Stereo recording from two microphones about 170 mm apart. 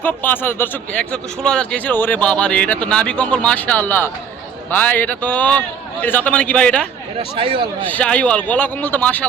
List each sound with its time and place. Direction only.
0.0 s a man's voice: 10° left (ahead or behind)
7.3 s speech: 30° right (ahead or behind)
7.9 s a man's voice: 10° left (ahead or behind)